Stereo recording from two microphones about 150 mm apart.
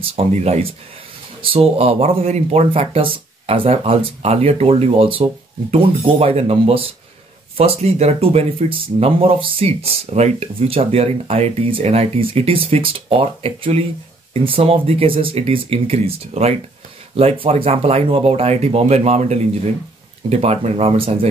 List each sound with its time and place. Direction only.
0.0 s speech: 40° right (ahead or behind)